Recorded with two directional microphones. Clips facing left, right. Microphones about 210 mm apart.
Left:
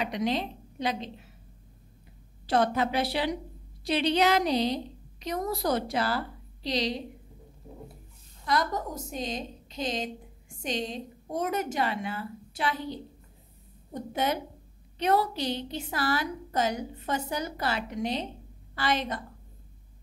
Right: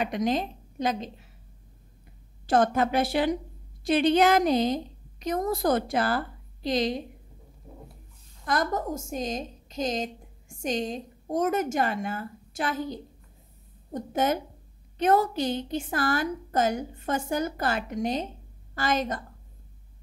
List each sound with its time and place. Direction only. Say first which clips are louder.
0.0 s a woman's voice: right 2 dB; 50° right (ahead or behind)
2.4 s a woman's voice: right 3 dB; 50° right (ahead or behind)
8.5 s a woman's voice: right 2 dB; 50° right (ahead or behind)